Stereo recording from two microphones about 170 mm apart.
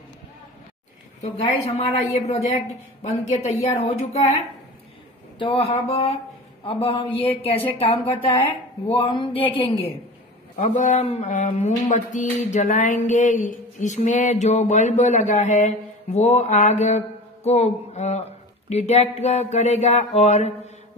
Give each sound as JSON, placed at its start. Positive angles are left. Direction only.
{"t": 1.2, "sound": "mantra", "side_deg": 40}
{"t": 5.4, "sound": "mantra", "side_deg": 35}
{"t": 10.6, "sound": "a sound", "side_deg": 45}
{"t": 18.7, "sound": "mantra", "side_deg": 40}